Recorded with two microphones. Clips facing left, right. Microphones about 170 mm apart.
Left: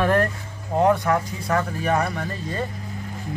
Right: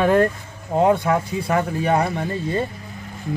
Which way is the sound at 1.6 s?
30° right (ahead or behind).